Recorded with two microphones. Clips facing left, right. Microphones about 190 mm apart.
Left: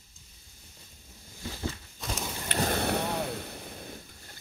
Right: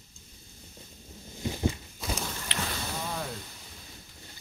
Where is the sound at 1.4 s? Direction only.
15° right (ahead or behind).